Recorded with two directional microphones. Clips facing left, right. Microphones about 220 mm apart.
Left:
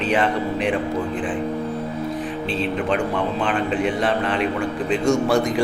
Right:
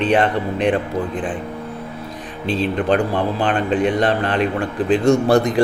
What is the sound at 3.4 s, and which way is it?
Speech, 40° right (ahead or behind).